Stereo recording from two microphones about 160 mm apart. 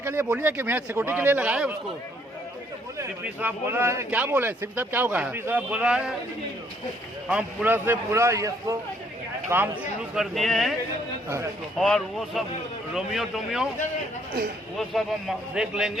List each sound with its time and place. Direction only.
0.0 s speech: 15° right (ahead or behind)
3.0 s speech: 15° right (ahead or behind)
7.3 s speech: 10° right (ahead or behind)
10.2 s a man's voice: centre (ahead or behind)
11.8 s a man's voice: 5° left (ahead or behind)
14.8 s a man's voice: centre (ahead or behind)